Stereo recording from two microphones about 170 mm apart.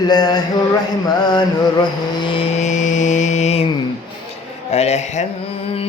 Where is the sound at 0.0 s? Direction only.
25° left (ahead or behind).